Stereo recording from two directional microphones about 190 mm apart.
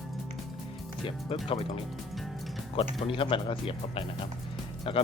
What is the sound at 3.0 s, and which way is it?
Speech, 30° left (ahead or behind).